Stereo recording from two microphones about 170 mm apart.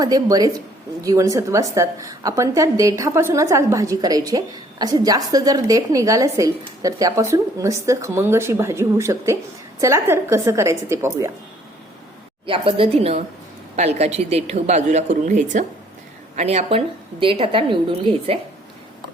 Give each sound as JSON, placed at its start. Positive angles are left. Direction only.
{"t": 0.0, "sound": "a woman's voice", "side_deg": -20}
{"t": 12.5, "sound": "a woman's voice", "side_deg": -30}